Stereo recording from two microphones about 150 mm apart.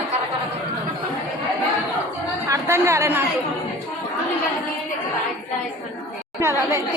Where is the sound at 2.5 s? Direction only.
15° right (ahead or behind).